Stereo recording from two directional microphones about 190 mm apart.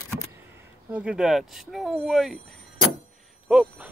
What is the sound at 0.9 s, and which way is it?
Speech, 5° right (ahead or behind).